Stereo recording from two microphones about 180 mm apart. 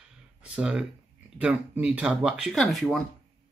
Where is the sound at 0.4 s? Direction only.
5° right (ahead or behind).